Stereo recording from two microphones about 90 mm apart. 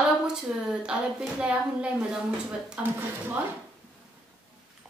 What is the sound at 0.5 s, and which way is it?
A woman's voice, 10° right (ahead or behind).